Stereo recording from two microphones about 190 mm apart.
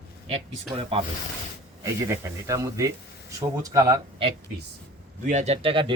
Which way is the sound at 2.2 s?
15° right (ahead or behind).